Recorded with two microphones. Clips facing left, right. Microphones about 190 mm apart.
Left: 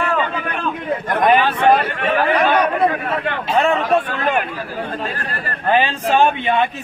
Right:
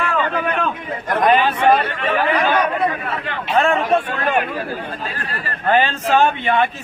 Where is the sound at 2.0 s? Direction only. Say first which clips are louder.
Left 1 dB; 50° left (ahead or behind).